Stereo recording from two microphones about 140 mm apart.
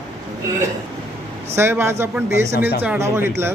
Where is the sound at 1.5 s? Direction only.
15° right (ahead or behind).